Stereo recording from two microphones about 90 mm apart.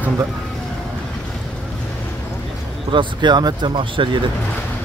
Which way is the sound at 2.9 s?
60° right (ahead or behind).